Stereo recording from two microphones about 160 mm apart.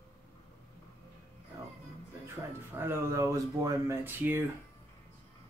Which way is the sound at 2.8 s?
15° right (ahead or behind).